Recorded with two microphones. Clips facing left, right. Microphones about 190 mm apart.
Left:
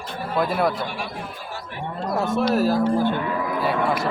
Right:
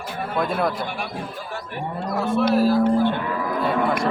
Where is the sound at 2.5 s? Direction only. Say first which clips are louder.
Right 3 dB; 45° left (ahead or behind).